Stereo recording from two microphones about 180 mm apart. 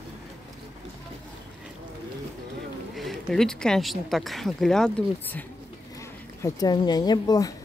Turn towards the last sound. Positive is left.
turn(degrees=20)  # may be behind; listen again after turning